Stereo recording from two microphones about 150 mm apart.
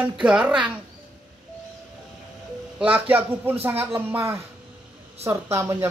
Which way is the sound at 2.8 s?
10° right (ahead or behind).